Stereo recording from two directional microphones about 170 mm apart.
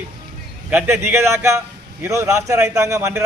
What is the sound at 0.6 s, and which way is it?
A man's voice, 10° right (ahead or behind).